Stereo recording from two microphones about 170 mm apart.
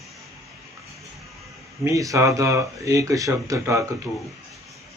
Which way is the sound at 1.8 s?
20° right (ahead or behind).